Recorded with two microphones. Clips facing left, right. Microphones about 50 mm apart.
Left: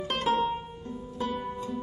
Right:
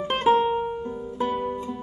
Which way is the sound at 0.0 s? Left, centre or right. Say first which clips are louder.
Right 7 dB; right.